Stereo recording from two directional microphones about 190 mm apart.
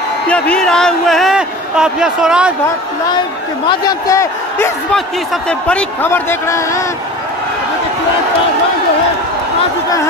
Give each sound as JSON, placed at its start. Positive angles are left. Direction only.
{"t": 0.3, "sound": "a man's voice", "side_deg": 5}
{"t": 3.6, "sound": "a man's voice", "side_deg": 20}